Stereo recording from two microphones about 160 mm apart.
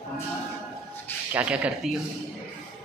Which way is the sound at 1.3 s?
10° right (ahead or behind).